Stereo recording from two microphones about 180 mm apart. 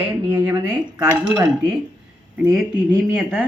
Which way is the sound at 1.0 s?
5° right (ahead or behind).